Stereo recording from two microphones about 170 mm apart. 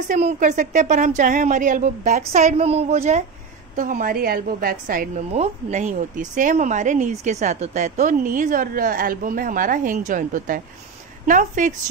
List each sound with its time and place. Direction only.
0.1 s speech: 50° right (ahead or behind)
3.7 s a woman's voice: 50° right (ahead or behind)
5.3 s speech: 40° right (ahead or behind)